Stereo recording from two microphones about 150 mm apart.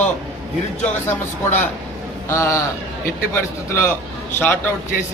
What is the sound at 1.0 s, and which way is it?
A man's voice, 15° left (ahead or behind).